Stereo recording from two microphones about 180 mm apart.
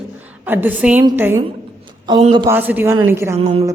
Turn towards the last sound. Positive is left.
turn(degrees=-35)  # may be behind; listen again after turning